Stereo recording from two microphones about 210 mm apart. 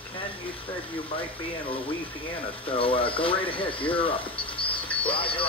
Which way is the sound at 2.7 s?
25° left (ahead or behind).